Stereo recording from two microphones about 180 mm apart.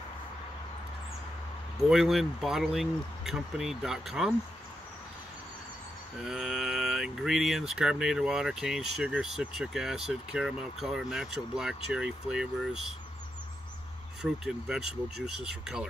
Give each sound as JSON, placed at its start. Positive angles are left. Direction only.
{"t": 1.8, "sound": "speech", "side_deg": 0}
{"t": 6.2, "sound": "speech", "side_deg": 0}
{"t": 14.2, "sound": "speech", "side_deg": 0}